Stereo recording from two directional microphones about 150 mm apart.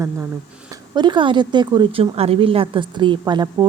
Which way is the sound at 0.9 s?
30° right (ahead or behind).